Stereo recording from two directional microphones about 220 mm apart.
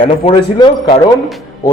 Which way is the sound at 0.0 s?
25° left (ahead or behind).